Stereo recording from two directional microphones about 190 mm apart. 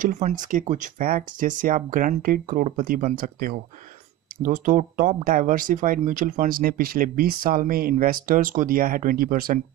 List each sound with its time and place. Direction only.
0.0 s speech: 40° right (ahead or behind)